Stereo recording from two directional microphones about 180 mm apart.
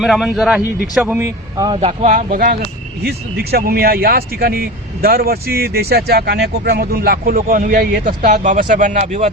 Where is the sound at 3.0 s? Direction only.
60° right (ahead or behind).